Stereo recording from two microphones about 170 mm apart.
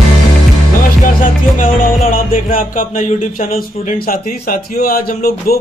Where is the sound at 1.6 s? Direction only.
55° left (ahead or behind).